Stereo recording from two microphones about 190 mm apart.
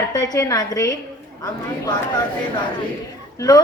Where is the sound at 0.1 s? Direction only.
20° left (ahead or behind).